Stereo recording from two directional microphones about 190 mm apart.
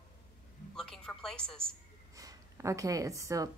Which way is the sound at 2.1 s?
20° right (ahead or behind).